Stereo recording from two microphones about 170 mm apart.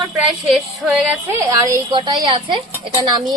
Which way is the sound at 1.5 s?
20° right (ahead or behind).